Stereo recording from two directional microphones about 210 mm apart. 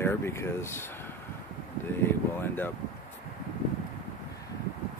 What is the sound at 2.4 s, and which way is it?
Speech, 10° left (ahead or behind).